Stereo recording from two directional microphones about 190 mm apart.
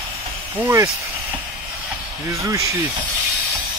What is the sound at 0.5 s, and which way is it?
Speech, 10° right (ahead or behind).